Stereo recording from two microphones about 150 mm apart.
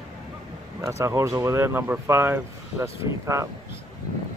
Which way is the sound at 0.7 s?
20° right (ahead or behind).